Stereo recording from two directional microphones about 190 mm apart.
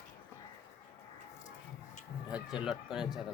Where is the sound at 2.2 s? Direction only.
5° right (ahead or behind).